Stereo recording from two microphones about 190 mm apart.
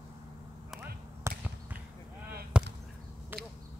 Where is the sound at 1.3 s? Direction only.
15° right (ahead or behind).